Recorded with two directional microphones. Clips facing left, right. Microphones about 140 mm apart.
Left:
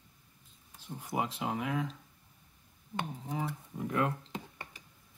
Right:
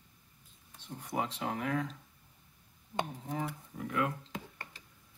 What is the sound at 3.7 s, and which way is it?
Speech, 25° left (ahead or behind).